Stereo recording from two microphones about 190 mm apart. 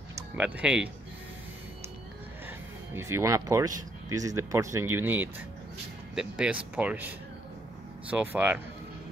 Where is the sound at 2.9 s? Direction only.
15° right (ahead or behind).